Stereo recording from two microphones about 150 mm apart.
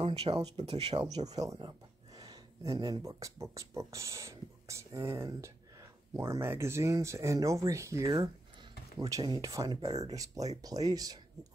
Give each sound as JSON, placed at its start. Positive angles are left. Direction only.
{"t": 0.0, "sound": "a sound", "side_deg": -40}
{"t": 0.7, "sound": "speech", "side_deg": -40}
{"t": 1.0, "sound": "speech", "side_deg": -25}